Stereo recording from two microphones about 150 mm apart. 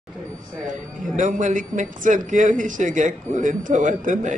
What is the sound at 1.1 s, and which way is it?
Speech, 60° right (ahead or behind).